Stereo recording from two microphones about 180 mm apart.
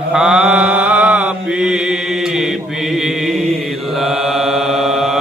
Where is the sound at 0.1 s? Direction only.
5° right (ahead or behind).